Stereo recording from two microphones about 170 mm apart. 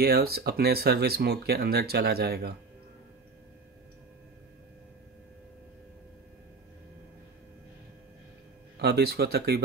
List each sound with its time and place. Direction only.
0.0 s speech: 65° right (ahead or behind)
8.7 s speech: 70° right (ahead or behind)